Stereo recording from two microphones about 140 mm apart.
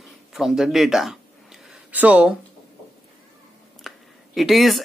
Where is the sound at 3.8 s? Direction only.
Centre (ahead or behind).